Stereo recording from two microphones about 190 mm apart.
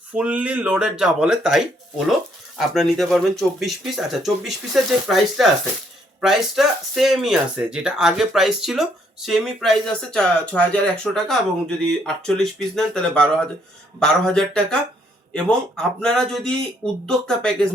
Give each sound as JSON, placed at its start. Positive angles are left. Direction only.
{"t": 0.1, "sound": "speech", "side_deg": -5}